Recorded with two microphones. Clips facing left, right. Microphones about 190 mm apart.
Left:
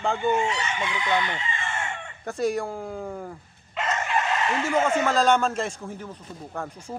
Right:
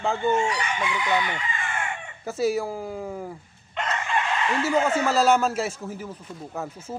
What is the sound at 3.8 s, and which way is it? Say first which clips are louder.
Chicken: left 1 dB; 5° left (ahead or behind).